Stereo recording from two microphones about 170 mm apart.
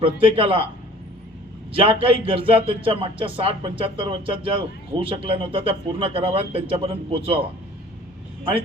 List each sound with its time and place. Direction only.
0.0 s a man's voice: 30° right (ahead or behind)
1.7 s a man's voice: 30° right (ahead or behind)